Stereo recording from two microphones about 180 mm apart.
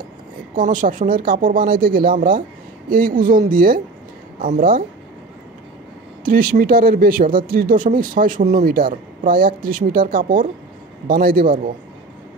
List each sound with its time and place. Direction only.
0.6 s speech: 50° right (ahead or behind)
6.2 s a man's voice: 50° right (ahead or behind)